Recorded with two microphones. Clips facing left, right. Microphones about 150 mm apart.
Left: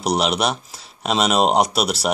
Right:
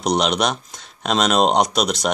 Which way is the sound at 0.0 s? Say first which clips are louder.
Right 1 dB; 5° left (ahead or behind).